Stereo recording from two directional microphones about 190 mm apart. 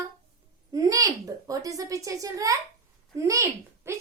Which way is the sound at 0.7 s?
20° right (ahead or behind).